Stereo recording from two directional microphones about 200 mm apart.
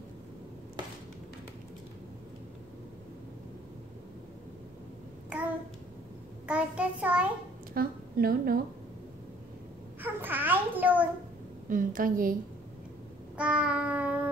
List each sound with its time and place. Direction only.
6.4 s child singing: 5° right (ahead or behind)
7.7 s a sound: 45° right (ahead or behind)
10.0 s babbling: 10° right (ahead or behind)
11.7 s a woman's voice: 40° right (ahead or behind)
13.4 s child singing: 5° right (ahead or behind)